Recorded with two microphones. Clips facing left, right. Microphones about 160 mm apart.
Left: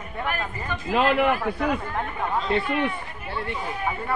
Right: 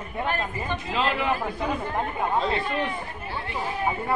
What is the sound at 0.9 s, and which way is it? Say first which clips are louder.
Speech: left 6 dB; 60° left (ahead or behind).